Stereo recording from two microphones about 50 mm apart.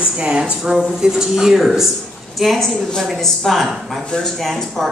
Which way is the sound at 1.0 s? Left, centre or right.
Centre.